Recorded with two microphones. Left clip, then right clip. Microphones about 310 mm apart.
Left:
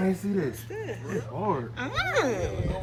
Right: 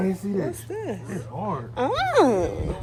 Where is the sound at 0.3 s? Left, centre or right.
Centre.